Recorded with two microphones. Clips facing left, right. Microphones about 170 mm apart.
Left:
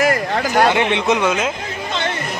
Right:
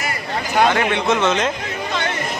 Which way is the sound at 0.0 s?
90° left.